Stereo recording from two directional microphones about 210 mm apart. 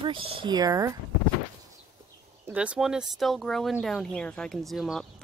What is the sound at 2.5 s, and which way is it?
Speech, 5° right (ahead or behind).